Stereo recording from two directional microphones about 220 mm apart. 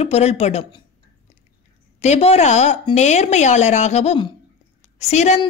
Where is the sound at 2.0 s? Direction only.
30° left (ahead or behind).